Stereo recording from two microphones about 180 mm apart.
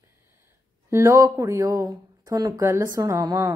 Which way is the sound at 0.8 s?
15° right (ahead or behind).